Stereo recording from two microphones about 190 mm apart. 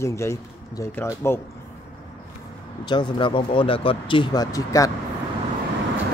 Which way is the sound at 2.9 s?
25° left (ahead or behind).